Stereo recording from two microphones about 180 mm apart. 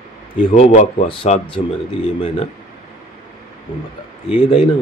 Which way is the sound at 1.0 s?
30° left (ahead or behind).